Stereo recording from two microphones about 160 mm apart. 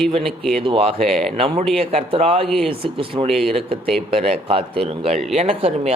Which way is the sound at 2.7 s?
35° right (ahead or behind).